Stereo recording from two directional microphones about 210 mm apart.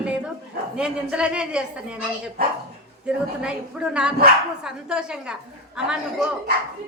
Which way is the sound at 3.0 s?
5° right (ahead or behind).